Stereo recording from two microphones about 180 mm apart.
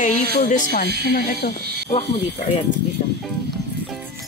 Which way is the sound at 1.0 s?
60° left (ahead or behind).